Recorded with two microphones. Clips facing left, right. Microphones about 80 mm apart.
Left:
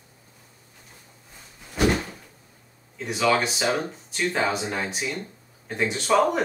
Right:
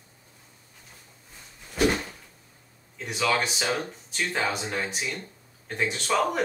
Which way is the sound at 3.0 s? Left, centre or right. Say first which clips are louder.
Left 4 dB; centre.